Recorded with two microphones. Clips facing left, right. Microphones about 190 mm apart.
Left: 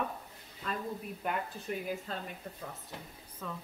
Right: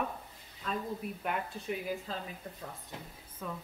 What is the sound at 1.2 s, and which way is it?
Speech, centre (ahead or behind).